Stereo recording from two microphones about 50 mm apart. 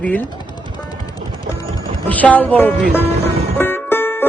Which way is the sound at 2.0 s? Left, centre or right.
Left.